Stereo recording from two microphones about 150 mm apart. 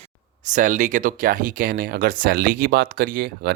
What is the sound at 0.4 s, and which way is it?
Speech, 60° right (ahead or behind).